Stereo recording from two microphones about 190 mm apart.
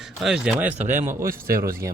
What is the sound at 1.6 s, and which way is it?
Speech, 15° right (ahead or behind).